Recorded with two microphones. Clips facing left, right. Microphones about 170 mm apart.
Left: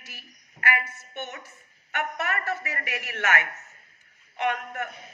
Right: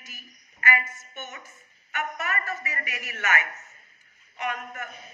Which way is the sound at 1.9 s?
70° left (ahead or behind).